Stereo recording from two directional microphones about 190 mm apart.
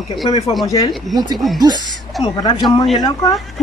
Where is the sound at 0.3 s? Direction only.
20° left (ahead or behind).